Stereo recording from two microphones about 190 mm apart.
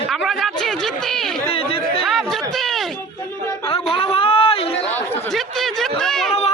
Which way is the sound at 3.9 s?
30° left (ahead or behind).